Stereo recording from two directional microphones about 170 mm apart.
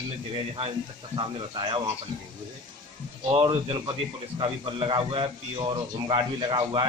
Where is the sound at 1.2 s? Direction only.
30° right (ahead or behind).